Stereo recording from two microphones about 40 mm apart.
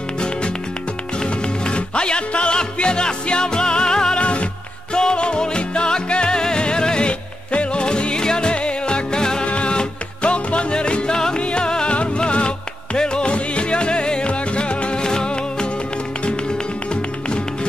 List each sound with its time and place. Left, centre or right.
1.2 s music: left
4.2 s music: left